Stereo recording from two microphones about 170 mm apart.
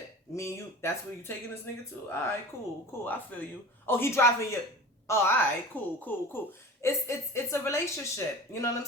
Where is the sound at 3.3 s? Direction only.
10° left (ahead or behind).